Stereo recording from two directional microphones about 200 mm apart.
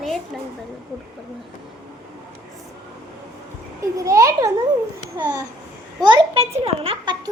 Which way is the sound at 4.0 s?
15° right (ahead or behind).